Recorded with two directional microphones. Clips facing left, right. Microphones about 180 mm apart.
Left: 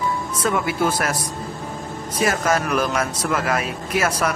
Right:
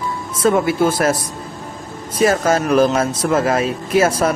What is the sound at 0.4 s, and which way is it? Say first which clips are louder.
Speech: right 7 dB; 30° right (ahead or behind).